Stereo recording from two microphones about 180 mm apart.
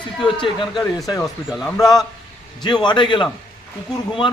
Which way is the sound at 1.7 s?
20° left (ahead or behind).